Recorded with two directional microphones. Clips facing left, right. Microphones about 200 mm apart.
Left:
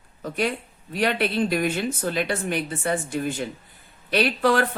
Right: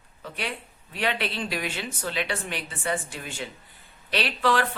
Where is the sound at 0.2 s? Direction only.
45° left (ahead or behind).